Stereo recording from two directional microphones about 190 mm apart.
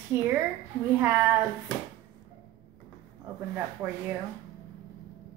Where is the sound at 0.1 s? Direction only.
10° right (ahead or behind).